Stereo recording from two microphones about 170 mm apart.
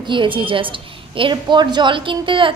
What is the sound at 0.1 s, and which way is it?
A woman's voice, 30° right (ahead or behind).